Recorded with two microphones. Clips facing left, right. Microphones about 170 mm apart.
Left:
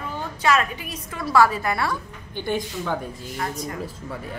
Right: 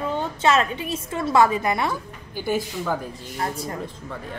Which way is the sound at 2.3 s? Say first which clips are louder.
Right 1 dB; 5° right (ahead or behind).